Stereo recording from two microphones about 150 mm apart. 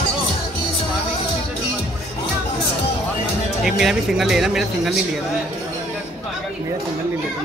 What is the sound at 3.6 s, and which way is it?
Speech, 5° right (ahead or behind).